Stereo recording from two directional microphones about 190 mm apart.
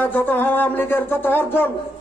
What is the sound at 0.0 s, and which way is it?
A man's voice, 10° left (ahead or behind).